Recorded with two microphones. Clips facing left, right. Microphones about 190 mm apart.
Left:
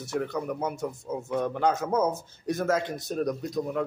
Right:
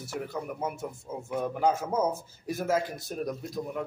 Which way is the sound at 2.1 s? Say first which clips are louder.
Even; 80° left.